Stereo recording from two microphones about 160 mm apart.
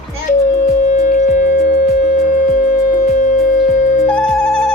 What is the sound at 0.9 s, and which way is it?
Music, 50° left (ahead or behind).